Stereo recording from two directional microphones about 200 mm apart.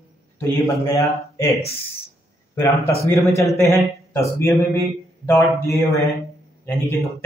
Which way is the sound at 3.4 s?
15° left (ahead or behind).